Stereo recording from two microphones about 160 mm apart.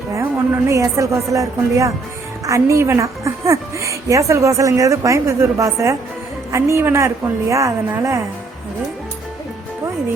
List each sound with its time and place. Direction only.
0.7 s a woman's voice: 20° right (ahead or behind)